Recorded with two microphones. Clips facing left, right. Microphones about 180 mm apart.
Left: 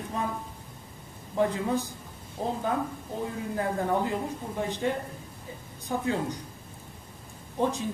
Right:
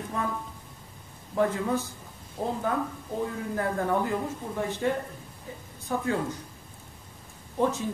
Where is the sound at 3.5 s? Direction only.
20° left (ahead or behind).